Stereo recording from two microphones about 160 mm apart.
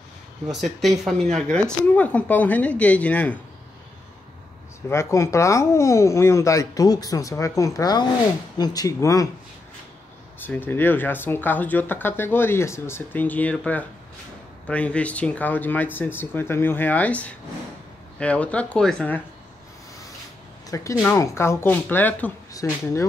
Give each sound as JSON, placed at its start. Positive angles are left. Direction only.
{"t": 0.6, "sound": "speech", "side_deg": 0}
{"t": 4.8, "sound": "speech", "side_deg": 15}
{"t": 10.4, "sound": "speech", "side_deg": 10}
{"t": 21.0, "sound": "speech", "side_deg": 15}
{"t": 22.5, "sound": "speech", "side_deg": 20}